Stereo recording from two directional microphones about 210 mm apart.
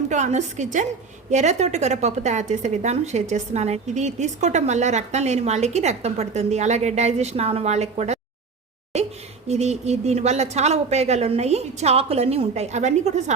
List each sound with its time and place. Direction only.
0.1 s a woman's voice: 35° right (ahead or behind)
8.9 s a sound: 30° right (ahead or behind)
9.5 s a woman's voice: 30° right (ahead or behind)